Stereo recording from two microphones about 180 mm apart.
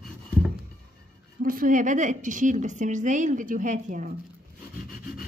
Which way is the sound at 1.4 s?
50° right (ahead or behind).